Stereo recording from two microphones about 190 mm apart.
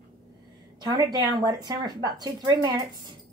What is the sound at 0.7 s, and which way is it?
A woman's voice, 20° right (ahead or behind).